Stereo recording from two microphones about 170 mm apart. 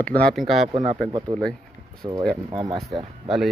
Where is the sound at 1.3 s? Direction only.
25° right (ahead or behind).